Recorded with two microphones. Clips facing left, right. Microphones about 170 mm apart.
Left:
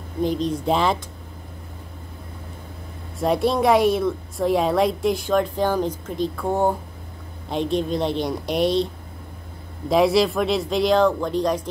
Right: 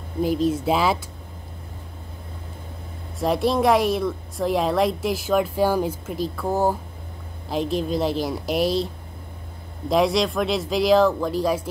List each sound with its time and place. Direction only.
0.2 s a woman's voice: 5° right (ahead or behind)
3.2 s a woman's voice: centre (ahead or behind)
9.8 s a woman's voice: centre (ahead or behind)